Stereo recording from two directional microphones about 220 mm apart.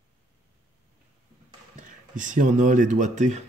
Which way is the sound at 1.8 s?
35° right (ahead or behind).